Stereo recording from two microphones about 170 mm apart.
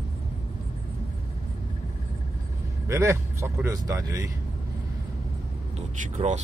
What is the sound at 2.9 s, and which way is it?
Speech, 15° right (ahead or behind).